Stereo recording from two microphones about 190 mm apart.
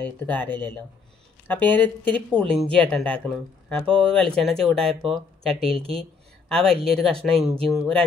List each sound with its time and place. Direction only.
0.0 s speech: 10° left (ahead or behind)